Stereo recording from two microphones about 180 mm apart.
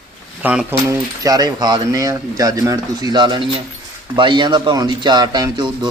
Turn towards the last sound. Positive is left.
turn(degrees=-25)  # may be behind; listen again after turning